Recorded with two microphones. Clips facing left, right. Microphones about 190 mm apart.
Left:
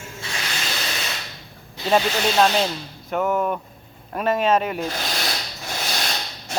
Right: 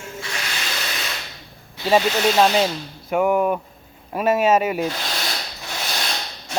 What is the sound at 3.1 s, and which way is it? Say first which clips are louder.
Speech: right 4 dB; 10° right (ahead or behind).